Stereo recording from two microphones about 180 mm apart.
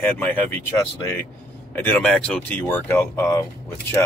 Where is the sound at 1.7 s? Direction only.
10° left (ahead or behind).